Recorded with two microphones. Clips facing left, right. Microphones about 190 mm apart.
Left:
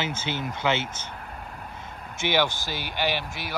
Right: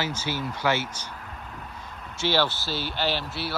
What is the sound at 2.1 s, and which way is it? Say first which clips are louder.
Speech: even; 15° left (ahead or behind).